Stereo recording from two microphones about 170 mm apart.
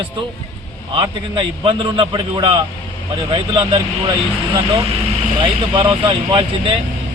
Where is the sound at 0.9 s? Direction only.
30° right (ahead or behind).